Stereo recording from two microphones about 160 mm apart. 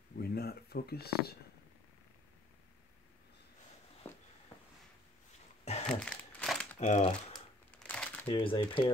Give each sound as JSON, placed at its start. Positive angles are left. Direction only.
{"t": 0.2, "sound": "speech", "side_deg": 75}
{"t": 4.1, "sound": "a sound", "side_deg": 15}
{"t": 5.9, "sound": "crumpling", "side_deg": 0}
{"t": 6.8, "sound": "speech", "side_deg": 40}
{"t": 7.9, "sound": "shuffling cards", "side_deg": 10}
{"t": 8.3, "sound": "speech", "side_deg": 35}